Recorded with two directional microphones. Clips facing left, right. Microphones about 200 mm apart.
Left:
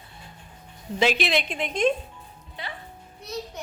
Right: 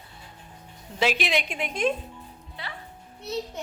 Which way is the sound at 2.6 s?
20° left (ahead or behind).